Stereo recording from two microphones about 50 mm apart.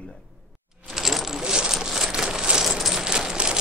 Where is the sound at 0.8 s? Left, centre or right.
Centre.